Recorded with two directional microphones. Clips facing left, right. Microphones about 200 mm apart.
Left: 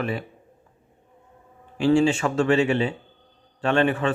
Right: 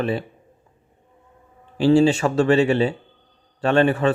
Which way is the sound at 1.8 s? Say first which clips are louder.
Right 3 dB; 35° right (ahead or behind).